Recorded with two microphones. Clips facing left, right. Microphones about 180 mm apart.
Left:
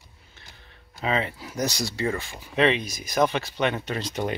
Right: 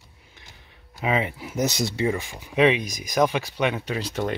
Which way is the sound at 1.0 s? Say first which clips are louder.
Right 2 dB; 15° right (ahead or behind).